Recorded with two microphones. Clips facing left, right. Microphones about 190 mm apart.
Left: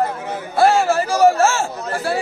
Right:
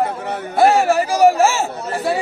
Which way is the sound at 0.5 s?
15° right (ahead or behind).